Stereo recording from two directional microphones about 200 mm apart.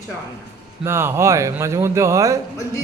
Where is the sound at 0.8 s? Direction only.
10° right (ahead or behind).